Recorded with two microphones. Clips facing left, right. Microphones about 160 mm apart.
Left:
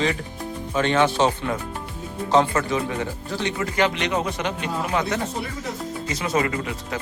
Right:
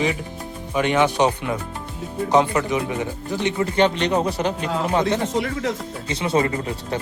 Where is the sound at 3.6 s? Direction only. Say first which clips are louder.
Right 4 dB; 30° right (ahead or behind).